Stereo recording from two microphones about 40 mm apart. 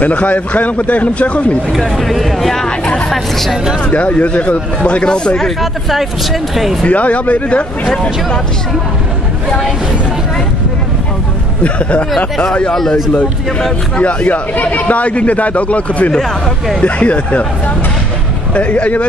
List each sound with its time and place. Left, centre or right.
0.0 s a man's voice: left
1.8 s speech: centre
3.9 s a man's voice: left
5.6 s speech: centre
6.8 s a man's voice: left
7.9 s speech: left
11.6 s a man's voice: left
12.7 s speech: centre
13.9 s a man's voice: left
18.5 s a man's voice: left